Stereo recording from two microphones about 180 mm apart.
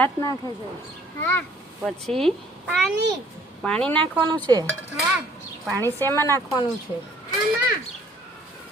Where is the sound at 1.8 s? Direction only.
Centre (ahead or behind).